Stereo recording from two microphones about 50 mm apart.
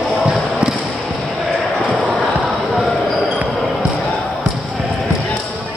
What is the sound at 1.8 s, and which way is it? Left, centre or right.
Basketball bounce, right.